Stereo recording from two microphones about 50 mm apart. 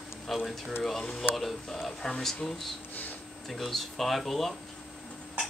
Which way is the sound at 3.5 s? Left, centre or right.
Centre.